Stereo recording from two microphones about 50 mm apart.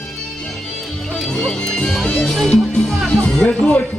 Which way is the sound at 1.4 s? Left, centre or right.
Centre.